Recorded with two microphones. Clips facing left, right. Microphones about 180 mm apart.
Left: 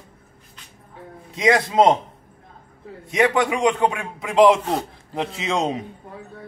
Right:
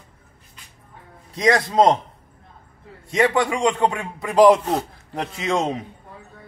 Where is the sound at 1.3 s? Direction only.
5° left (ahead or behind).